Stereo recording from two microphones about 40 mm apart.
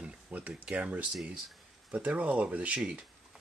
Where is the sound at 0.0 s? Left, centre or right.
Right.